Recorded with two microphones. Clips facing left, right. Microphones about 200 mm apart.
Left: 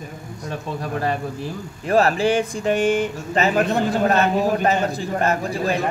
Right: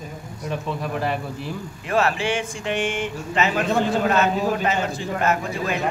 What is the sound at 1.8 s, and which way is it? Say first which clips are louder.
Speech: left 5 dB; 35° left (ahead or behind).